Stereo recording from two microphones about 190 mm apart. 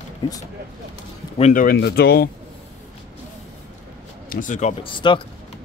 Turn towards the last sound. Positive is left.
turn(degrees=25)  # may be behind; listen again after turning